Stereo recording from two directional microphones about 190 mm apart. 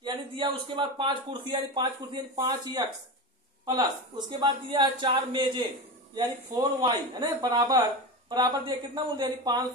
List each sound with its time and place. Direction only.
0.0 s speech: 25° right (ahead or behind)